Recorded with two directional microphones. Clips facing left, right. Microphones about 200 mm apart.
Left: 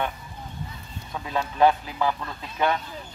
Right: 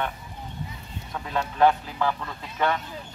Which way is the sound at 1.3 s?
10° left (ahead or behind).